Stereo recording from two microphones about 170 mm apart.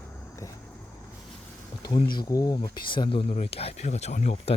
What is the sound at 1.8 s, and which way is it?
Speech, 25° left (ahead or behind).